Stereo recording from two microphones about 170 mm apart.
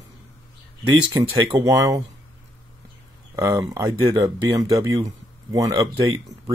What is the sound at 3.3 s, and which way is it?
Speech, 20° right (ahead or behind).